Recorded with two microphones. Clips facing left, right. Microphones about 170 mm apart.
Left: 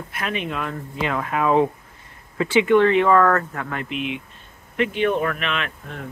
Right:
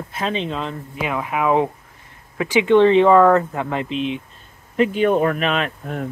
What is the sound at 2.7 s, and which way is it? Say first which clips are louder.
Speech: right 5 dB; 30° right (ahead or behind).